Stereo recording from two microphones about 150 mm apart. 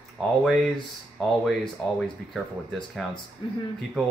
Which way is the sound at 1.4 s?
Centre (ahead or behind).